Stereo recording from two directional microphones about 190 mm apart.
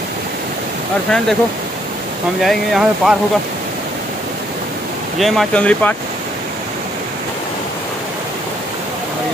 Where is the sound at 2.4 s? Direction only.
Centre (ahead or behind).